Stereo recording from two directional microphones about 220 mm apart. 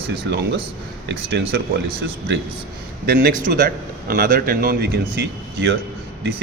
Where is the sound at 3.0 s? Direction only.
40° right (ahead or behind).